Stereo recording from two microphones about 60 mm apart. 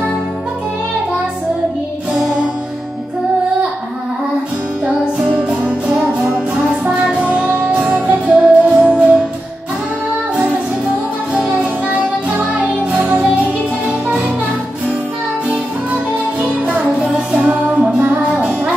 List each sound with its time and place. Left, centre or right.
4.8 s music: centre
7.1 s music: centre
16.6 s music: right
17.5 s music: right